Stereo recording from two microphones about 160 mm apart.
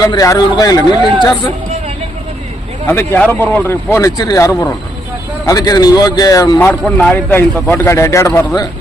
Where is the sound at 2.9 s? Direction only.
10° left (ahead or behind).